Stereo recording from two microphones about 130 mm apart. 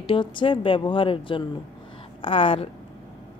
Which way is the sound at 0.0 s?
40° left (ahead or behind).